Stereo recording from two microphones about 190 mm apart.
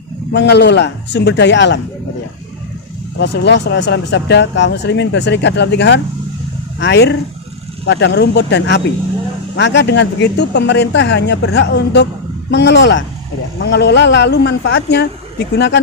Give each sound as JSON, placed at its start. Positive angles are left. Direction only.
{"t": 0.3, "sound": "speech", "side_deg": 60}
{"t": 3.2, "sound": "speech", "side_deg": 65}